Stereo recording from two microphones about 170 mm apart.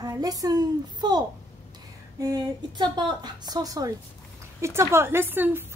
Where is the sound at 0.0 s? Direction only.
20° right (ahead or behind).